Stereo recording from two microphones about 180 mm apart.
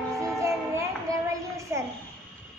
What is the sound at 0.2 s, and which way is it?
Child singing, 15° right (ahead or behind).